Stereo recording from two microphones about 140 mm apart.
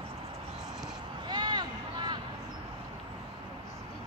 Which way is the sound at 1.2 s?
30° right (ahead or behind).